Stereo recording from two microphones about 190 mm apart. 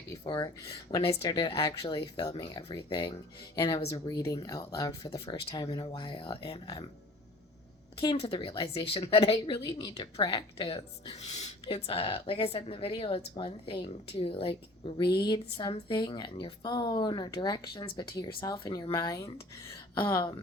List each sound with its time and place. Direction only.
0.1 s speech: 25° left (ahead or behind)
8.1 s speech: 30° left (ahead or behind)